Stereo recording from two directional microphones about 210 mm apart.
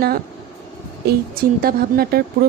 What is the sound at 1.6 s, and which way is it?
Speech, 45° right (ahead or behind).